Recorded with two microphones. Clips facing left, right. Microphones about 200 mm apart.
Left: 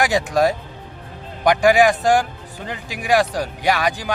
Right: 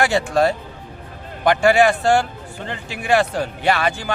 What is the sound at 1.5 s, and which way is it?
Speech, 15° left (ahead or behind).